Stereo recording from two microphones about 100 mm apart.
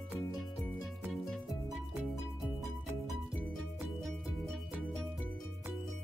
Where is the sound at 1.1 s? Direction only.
Centre (ahead or behind).